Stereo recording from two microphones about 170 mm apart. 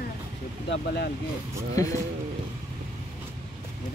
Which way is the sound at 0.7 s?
75° left (ahead or behind).